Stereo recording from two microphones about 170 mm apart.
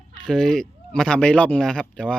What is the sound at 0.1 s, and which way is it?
Speech, 5° left (ahead or behind).